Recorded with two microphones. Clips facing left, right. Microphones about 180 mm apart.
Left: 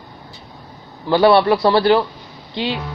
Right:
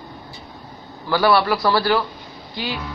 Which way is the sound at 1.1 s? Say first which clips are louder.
Left 5 dB; 25° left (ahead or behind).